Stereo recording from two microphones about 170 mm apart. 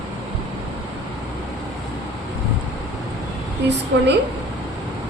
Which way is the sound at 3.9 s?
90° right.